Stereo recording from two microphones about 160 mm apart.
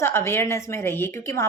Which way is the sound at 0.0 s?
15° left (ahead or behind).